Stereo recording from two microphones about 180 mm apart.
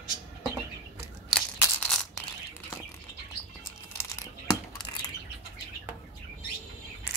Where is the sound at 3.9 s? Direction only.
15° left (ahead or behind).